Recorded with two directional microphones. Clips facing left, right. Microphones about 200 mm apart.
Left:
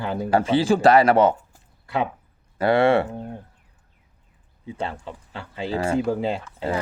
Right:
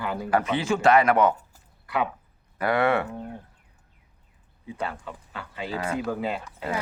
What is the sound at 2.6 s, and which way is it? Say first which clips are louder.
Speech: left 5 dB; 30° left (ahead or behind).